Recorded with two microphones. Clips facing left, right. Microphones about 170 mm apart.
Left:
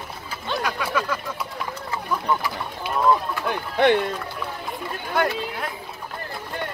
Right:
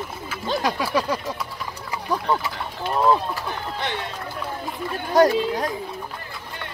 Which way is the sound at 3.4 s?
60° left (ahead or behind).